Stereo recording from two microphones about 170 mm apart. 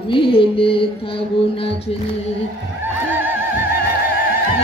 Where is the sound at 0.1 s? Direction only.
30° left (ahead or behind).